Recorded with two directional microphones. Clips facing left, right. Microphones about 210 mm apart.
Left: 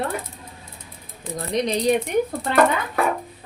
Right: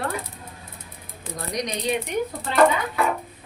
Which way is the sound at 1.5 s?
30° left (ahead or behind).